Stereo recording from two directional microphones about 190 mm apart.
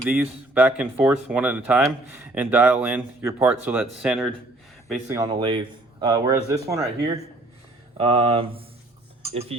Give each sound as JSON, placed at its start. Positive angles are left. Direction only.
{"t": 0.1, "sound": "speech", "side_deg": -5}
{"t": 5.0, "sound": "speech", "side_deg": -15}
{"t": 7.9, "sound": "speech", "side_deg": -30}